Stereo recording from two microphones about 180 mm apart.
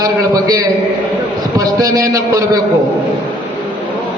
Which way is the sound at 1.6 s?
20° right (ahead or behind).